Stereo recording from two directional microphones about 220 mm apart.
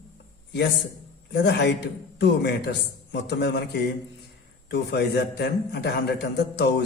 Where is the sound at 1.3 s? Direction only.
50° left (ahead or behind).